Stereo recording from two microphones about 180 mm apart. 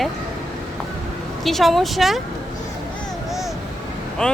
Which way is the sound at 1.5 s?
Centre (ahead or behind).